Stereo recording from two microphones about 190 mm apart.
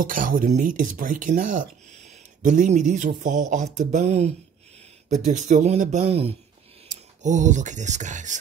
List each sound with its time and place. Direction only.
0.0 s speech: 45° right (ahead or behind)